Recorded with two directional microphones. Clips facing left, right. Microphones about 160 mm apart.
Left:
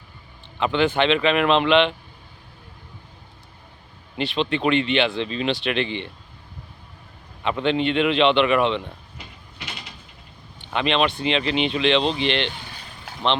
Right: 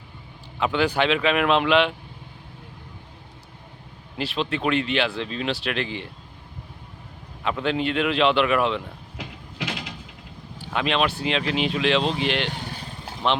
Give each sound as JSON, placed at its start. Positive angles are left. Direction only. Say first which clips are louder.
{"t": 0.6, "sound": "speech", "louder": "left 2 dB", "side_deg": -5}
{"t": 4.2, "sound": "speech", "louder": "left 3 dB", "side_deg": 0}
{"t": 7.4, "sound": "speech", "louder": "left 3 dB", "side_deg": -5}
{"t": 9.1, "sound": "mechanisms", "louder": "right 7 dB", "side_deg": -90}
{"t": 10.6, "sound": "speech", "louder": "left 2 dB", "side_deg": -5}
{"t": 12.5, "sound": "speech", "louder": "right 3 dB", "side_deg": -50}